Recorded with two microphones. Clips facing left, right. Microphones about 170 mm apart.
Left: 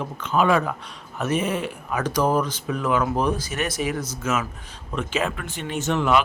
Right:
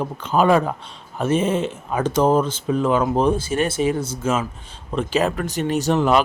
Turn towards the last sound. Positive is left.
turn(degrees=-35)  # may be behind; listen again after turning